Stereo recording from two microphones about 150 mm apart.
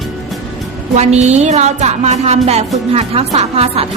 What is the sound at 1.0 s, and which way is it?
Music, 50° right (ahead or behind).